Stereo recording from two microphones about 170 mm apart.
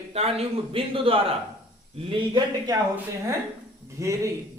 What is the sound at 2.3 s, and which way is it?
Speech, 25° right (ahead or behind).